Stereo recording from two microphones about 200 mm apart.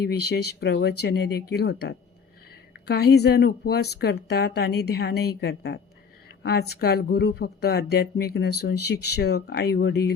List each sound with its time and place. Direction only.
0.1 s speech: 55° left (ahead or behind)